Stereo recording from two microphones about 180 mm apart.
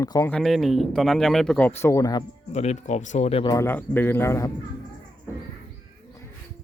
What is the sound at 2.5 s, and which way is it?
Speech, 40° left (ahead or behind).